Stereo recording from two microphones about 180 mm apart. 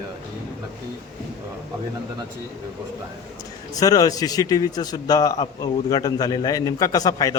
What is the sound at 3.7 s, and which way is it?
A man's voice, 20° left (ahead or behind).